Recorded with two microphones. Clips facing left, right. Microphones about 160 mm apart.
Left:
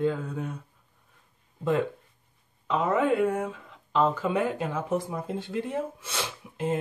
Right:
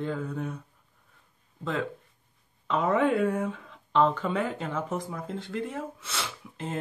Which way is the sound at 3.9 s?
5° left (ahead or behind).